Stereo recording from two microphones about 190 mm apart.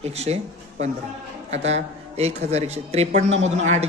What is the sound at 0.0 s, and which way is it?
A man's voice, 35° right (ahead or behind).